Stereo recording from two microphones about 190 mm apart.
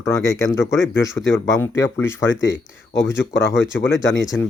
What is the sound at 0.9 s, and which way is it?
Speech, 10° left (ahead or behind).